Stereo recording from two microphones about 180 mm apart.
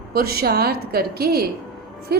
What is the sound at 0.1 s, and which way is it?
Speech, 55° right (ahead or behind).